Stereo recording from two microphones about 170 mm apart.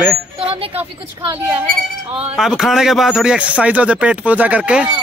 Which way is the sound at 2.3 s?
5° right (ahead or behind).